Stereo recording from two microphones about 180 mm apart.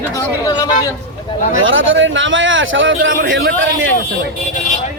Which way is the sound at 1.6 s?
90° right.